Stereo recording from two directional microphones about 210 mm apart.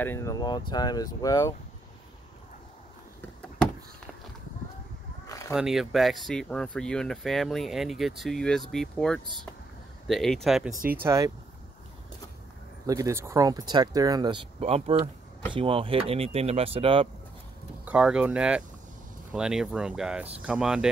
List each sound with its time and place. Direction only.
0.0 s speech: 10° left (ahead or behind)
5.2 s a sound: 15° left (ahead or behind)
5.5 s speech: centre (ahead or behind)
11.0 s speech: 15° right (ahead or behind)
12.8 s speech: 15° right (ahead or behind)
17.8 s speech: 5° right (ahead or behind)